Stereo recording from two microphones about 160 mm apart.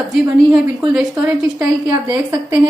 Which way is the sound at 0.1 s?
5° right (ahead or behind).